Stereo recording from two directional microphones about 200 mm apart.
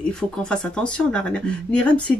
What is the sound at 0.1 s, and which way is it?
Speech, 5° left (ahead or behind).